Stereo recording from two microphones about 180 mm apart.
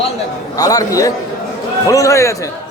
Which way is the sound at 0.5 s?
20° left (ahead or behind).